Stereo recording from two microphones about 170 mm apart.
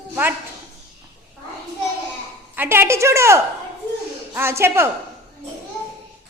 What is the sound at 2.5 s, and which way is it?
A woman's voice, 15° right (ahead or behind).